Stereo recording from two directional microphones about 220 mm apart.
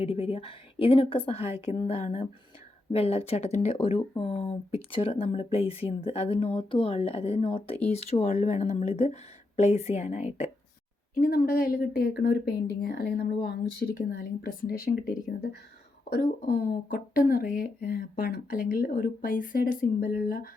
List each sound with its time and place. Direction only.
0.0 s speech: 25° left (ahead or behind)